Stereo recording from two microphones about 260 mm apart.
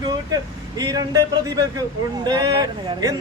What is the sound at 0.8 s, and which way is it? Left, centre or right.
Speech, centre.